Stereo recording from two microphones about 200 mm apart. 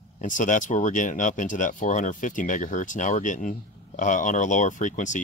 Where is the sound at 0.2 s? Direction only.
40° left (ahead or behind).